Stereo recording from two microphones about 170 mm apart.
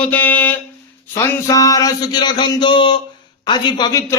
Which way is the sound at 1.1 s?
20° left (ahead or behind).